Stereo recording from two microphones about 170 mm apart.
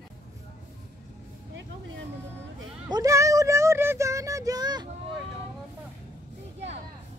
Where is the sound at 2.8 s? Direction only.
20° right (ahead or behind).